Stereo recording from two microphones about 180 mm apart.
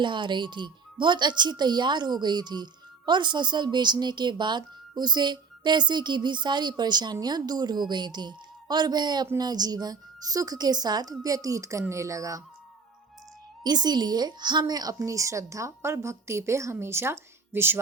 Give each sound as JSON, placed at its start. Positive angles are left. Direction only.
{"t": 0.0, "sound": "speech", "side_deg": -25}
{"t": 13.7, "sound": "a woman's voice", "side_deg": -25}